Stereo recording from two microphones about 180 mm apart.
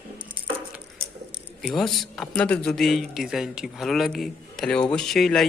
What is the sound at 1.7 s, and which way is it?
A man's voice, centre (ahead or behind).